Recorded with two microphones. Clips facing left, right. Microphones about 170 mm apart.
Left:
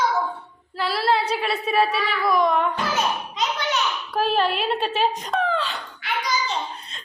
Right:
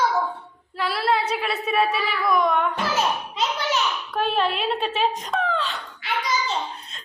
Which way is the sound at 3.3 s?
Centre (ahead or behind).